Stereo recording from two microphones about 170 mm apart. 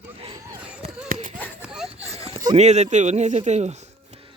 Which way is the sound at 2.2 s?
35° right (ahead or behind).